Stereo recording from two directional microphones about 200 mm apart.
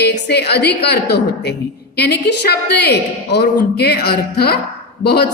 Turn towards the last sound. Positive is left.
turn(degrees=55)  # may be behind; listen again after turning